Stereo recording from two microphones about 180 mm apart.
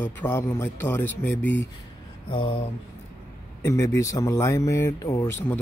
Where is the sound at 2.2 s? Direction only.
30° left (ahead or behind).